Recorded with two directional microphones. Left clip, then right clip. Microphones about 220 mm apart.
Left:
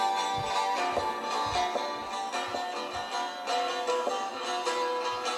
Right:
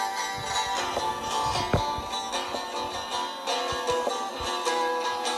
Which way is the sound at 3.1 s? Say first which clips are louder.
Right 1 dB; 40° right (ahead or behind).